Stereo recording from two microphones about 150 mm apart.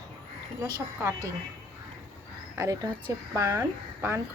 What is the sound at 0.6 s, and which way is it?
Speech, 20° right (ahead or behind).